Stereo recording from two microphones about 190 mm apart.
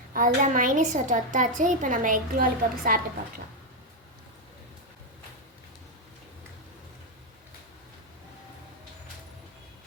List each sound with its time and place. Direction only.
0.1 s a woman's voice: 45° right (ahead or behind)